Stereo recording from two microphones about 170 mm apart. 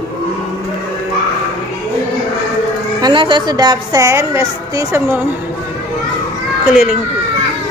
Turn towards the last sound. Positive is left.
turn(degrees=-5)  # may be behind; listen again after turning